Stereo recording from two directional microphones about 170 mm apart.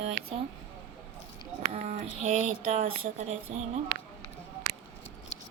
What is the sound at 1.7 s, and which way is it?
Speech, 40° right (ahead or behind).